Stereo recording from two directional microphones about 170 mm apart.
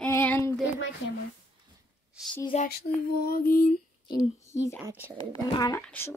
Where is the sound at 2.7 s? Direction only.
65° left (ahead or behind).